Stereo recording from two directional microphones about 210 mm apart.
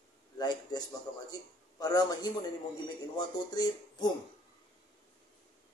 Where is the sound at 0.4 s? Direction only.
20° left (ahead or behind).